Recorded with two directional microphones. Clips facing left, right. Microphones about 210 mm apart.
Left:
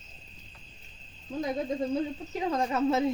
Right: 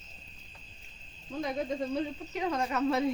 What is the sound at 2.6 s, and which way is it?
Speech, 25° left (ahead or behind).